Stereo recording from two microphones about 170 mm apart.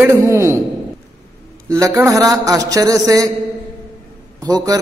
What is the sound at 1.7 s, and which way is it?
A man's voice, 15° right (ahead or behind).